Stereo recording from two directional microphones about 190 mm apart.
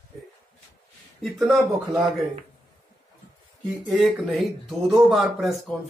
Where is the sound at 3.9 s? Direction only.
Centre (ahead or behind).